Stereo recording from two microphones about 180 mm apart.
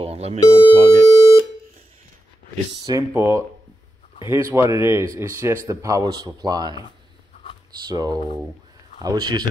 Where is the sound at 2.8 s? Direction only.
20° right (ahead or behind).